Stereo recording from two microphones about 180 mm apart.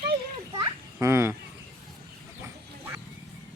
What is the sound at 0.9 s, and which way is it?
Speech, 15° right (ahead or behind).